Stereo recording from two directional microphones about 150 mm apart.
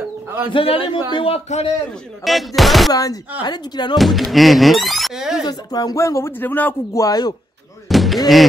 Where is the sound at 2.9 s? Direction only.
25° left (ahead or behind).